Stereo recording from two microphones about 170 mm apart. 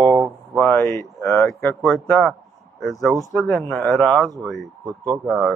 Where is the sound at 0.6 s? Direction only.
15° left (ahead or behind).